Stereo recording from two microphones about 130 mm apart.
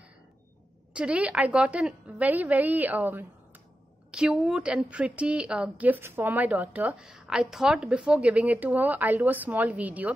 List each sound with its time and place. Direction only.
0.9 s a woman's voice: 10° right (ahead or behind)